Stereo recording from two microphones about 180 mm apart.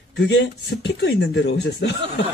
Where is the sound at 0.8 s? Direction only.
75° left (ahead or behind).